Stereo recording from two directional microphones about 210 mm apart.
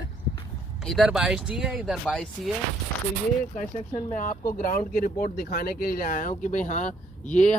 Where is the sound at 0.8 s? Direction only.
Centre (ahead or behind).